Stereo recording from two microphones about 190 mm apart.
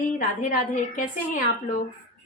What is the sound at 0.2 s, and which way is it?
A woman's voice, 45° left (ahead or behind).